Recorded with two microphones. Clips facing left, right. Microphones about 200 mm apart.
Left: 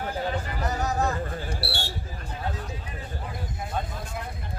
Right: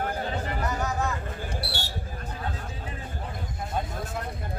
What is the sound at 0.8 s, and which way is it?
Chatter, 35° left (ahead or behind).